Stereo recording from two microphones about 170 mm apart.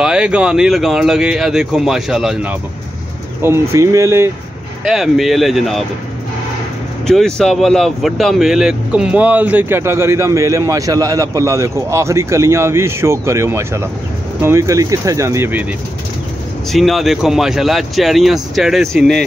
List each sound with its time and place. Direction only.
0.0 s speech: 5° right (ahead or behind)
3.4 s speech: 15° right (ahead or behind)
4.8 s speech: centre (ahead or behind)
7.1 s speech: 5° left (ahead or behind); by 15.6 s 15° right (ahead or behind)
16.7 s speech: centre (ahead or behind)